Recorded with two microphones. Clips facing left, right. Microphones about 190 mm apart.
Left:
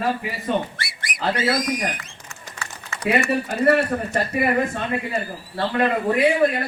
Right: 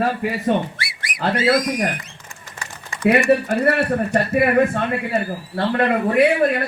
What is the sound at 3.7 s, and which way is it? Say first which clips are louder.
Speech: right 2 dB; 55° right (ahead or behind).